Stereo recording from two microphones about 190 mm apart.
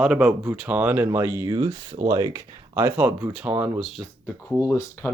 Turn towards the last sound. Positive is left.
turn(degrees=15)  # may be behind; listen again after turning